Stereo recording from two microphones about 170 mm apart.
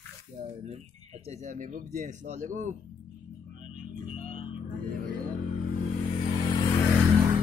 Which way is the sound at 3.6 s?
50° right (ahead or behind).